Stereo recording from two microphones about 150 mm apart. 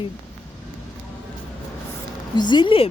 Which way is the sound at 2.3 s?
30° left (ahead or behind).